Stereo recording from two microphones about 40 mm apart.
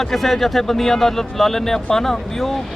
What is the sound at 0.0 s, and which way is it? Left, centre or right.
Speech, centre.